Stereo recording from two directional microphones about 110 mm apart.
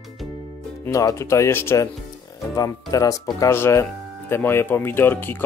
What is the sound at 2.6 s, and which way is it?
Speech, 35° left (ahead or behind).